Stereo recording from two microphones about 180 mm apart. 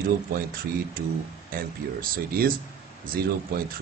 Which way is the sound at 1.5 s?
50° right (ahead or behind).